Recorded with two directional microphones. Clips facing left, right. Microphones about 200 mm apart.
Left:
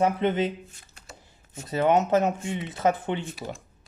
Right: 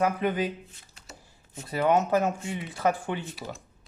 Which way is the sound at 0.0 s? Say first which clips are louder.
Left 3 dB; 25° left (ahead or behind).